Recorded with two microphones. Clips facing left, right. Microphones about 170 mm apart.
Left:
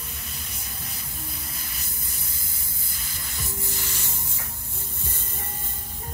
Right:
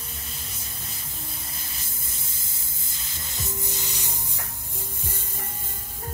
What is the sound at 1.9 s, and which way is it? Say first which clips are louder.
Spray: left 1 dB; 25° right (ahead or behind).